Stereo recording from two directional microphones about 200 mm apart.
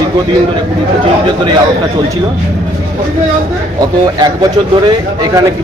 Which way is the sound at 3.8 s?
20° right (ahead or behind).